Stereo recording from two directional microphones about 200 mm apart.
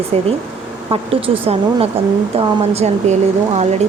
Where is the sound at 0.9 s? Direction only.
25° right (ahead or behind).